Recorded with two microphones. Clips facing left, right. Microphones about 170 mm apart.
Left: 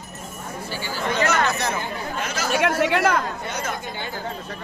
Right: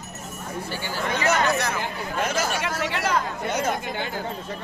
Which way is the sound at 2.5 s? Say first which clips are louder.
Left 7 dB; 60° left (ahead or behind).